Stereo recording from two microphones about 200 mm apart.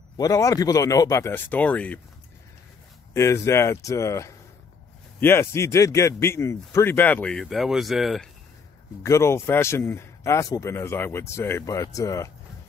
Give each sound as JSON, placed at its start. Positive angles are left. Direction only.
{"t": 0.2, "sound": "a man's voice", "side_deg": 15}
{"t": 3.1, "sound": "a man's voice", "side_deg": 15}
{"t": 9.0, "sound": "a man's voice", "side_deg": 15}